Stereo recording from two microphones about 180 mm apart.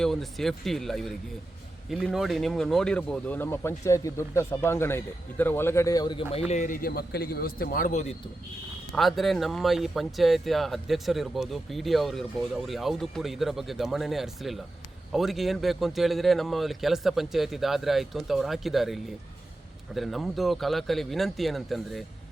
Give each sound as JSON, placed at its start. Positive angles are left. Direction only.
{"t": 0.0, "sound": "speech", "side_deg": 0}
{"t": 6.5, "sound": "a man's voice", "side_deg": 45}
{"t": 8.9, "sound": "speech", "side_deg": 0}